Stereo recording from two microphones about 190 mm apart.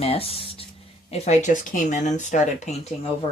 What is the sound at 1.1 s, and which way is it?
Speech, 35° left (ahead or behind).